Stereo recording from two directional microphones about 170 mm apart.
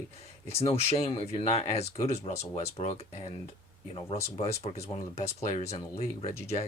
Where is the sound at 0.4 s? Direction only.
35° left (ahead or behind).